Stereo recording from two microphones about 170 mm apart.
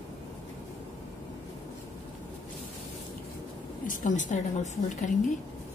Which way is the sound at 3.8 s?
50° left (ahead or behind).